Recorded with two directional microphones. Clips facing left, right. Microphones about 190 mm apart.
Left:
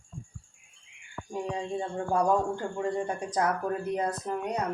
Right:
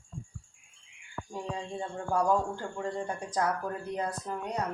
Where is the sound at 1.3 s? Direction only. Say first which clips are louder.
Left 5 dB; 20° left (ahead or behind).